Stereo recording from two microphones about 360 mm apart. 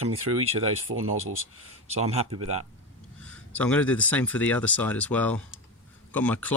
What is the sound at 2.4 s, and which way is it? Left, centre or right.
Speech, right.